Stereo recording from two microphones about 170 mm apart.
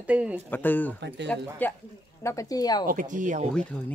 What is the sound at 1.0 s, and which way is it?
Speech, 90° right.